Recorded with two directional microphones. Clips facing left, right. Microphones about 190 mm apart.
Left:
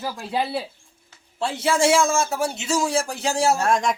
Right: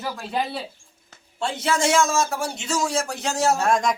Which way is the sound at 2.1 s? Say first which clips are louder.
Even; 30° left (ahead or behind).